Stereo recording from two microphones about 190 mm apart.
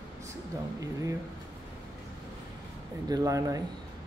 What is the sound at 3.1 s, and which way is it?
Speech, 20° right (ahead or behind).